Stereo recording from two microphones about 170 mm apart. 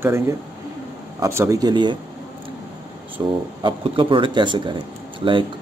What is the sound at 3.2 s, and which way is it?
Speech, 25° right (ahead or behind).